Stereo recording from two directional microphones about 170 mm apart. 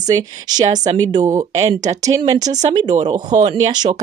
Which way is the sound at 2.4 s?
45° right (ahead or behind).